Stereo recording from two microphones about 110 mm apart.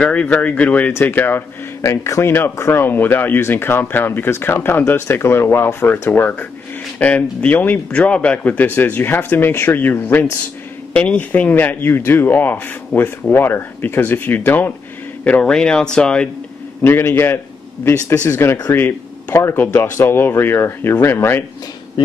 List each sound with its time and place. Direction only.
0.0 s speech: 10° left (ahead or behind)
16.8 s speech: 20° left (ahead or behind)
22.0 s speech: 45° left (ahead or behind)